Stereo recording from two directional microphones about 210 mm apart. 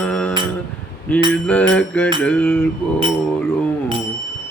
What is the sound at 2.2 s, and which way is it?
Music, 5° left (ahead or behind).